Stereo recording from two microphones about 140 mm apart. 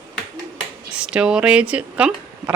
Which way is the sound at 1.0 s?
5° right (ahead or behind).